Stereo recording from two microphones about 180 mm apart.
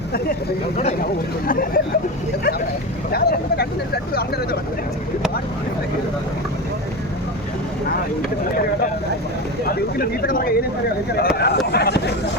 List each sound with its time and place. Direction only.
1.5 s speech: 55° left (ahead or behind)
3.1 s speech: 60° left (ahead or behind)
10.0 s speech: 55° left (ahead or behind)